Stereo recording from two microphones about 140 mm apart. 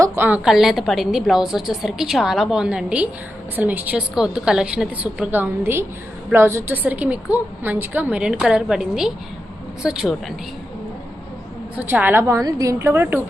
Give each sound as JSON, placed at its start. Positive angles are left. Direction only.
{"t": 0.0, "sound": "a woman's voice", "side_deg": -15}
{"t": 11.8, "sound": "a woman's voice", "side_deg": -10}